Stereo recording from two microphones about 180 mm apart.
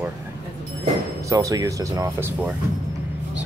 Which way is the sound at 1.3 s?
20° right (ahead or behind).